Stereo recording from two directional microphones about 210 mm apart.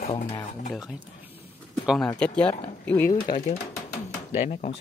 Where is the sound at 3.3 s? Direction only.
30° left (ahead or behind).